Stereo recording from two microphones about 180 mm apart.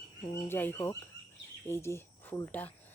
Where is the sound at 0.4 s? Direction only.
10° left (ahead or behind).